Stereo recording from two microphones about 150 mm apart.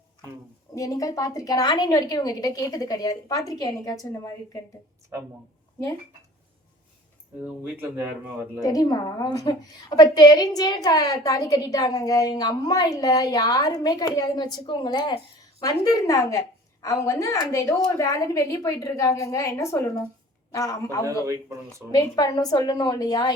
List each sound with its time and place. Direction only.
0.8 s a woman's voice: 25° left (ahead or behind)
7.4 s speech: 10° right (ahead or behind)
8.6 s a woman's voice: 25° left (ahead or behind)
21.2 s speech: 20° right (ahead or behind)
21.9 s a woman's voice: 25° left (ahead or behind)